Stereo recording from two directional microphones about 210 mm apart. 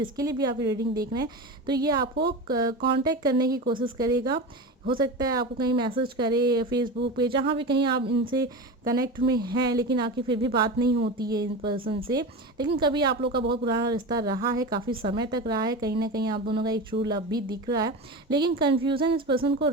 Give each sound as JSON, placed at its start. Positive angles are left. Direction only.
{"t": 0.0, "sound": "a woman's voice", "side_deg": -15}
{"t": 8.1, "sound": "speech", "side_deg": -45}
{"t": 8.4, "sound": "speech", "side_deg": -15}
{"t": 10.8, "sound": "speech", "side_deg": -50}
{"t": 11.2, "sound": "speech", "side_deg": -20}